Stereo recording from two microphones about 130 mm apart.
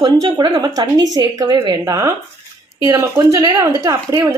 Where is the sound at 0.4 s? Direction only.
30° right (ahead or behind).